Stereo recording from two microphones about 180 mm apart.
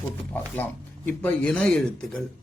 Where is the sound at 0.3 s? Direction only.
10° left (ahead or behind).